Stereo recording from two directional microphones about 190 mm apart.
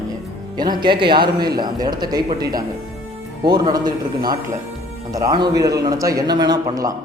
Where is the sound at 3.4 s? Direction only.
20° right (ahead or behind).